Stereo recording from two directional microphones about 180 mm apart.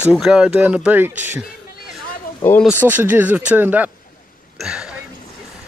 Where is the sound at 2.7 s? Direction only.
10° right (ahead or behind).